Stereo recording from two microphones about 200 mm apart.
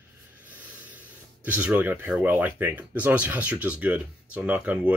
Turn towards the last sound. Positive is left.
turn(degrees=-5)  # may be behind; listen again after turning